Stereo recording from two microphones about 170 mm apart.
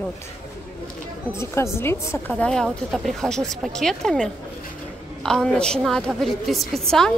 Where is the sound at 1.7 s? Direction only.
15° left (ahead or behind).